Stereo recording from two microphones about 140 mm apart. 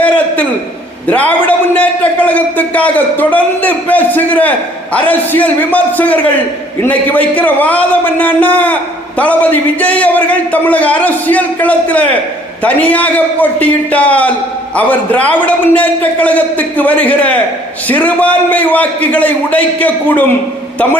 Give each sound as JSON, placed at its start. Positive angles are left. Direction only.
{"t": 1.0, "sound": "a man's voice", "side_deg": 10}